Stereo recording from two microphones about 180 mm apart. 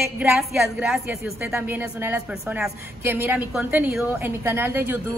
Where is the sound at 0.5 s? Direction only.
5° right (ahead or behind).